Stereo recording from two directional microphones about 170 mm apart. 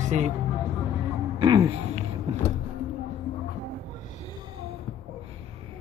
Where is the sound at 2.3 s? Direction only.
35° right (ahead or behind).